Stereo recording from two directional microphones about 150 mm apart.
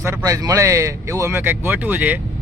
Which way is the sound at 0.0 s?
20° right (ahead or behind).